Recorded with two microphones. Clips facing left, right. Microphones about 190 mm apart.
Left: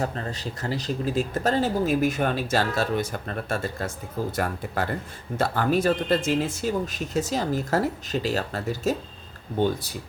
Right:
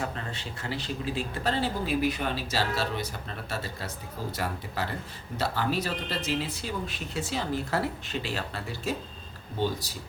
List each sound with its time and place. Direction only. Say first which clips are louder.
0.0 s speech: left 5 dB; 40° left (ahead or behind)